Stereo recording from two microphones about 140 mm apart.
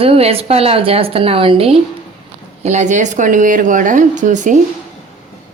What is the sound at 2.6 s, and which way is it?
Speech, 55° right (ahead or behind).